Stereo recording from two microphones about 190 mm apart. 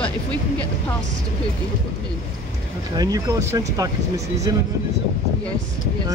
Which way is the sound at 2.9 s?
20° right (ahead or behind).